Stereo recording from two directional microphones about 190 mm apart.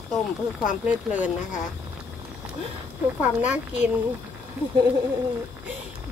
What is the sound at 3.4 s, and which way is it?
Speech, 5° right (ahead or behind).